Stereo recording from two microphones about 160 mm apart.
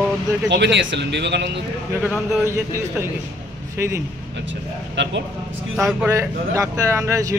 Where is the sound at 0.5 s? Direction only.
90° right.